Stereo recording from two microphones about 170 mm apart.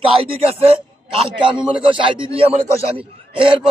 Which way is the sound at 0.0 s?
35° right (ahead or behind).